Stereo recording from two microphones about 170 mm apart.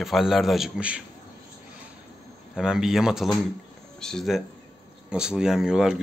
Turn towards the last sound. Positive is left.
turn(degrees=-5)  # may be behind; listen again after turning